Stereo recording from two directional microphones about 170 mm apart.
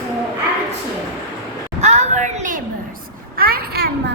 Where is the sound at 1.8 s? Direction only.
40° right (ahead or behind).